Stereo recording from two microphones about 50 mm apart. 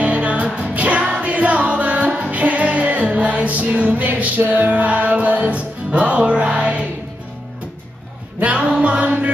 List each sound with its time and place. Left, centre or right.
0.0 s music: right
8.4 s music: right